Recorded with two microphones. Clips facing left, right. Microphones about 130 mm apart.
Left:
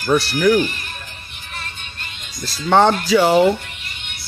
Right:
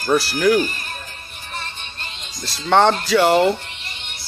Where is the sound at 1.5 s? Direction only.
30° right (ahead or behind).